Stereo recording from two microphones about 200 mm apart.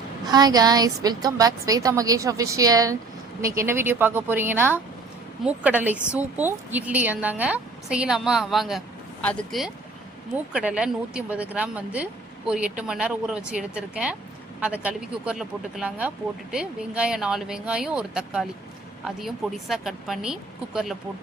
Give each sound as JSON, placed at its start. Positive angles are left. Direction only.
{"t": 0.3, "sound": "a woman's voice", "side_deg": -20}